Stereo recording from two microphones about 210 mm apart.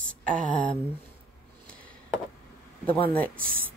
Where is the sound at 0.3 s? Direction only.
40° right (ahead or behind).